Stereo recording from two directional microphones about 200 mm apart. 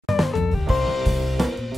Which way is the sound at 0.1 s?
Centre (ahead or behind).